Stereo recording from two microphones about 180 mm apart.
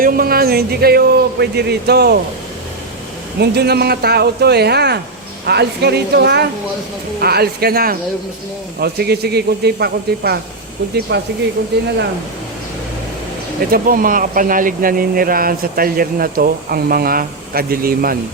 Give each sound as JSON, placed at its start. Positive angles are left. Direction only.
{"t": 0.0, "sound": "speech", "side_deg": -55}
{"t": 3.4, "sound": "speech", "side_deg": -65}
{"t": 11.1, "sound": "speech", "side_deg": -75}
{"t": 13.7, "sound": "speech", "side_deg": -55}